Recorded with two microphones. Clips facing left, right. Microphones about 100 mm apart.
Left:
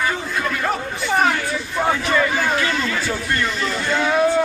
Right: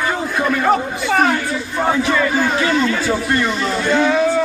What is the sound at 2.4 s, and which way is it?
A man's voice, 20° right (ahead or behind).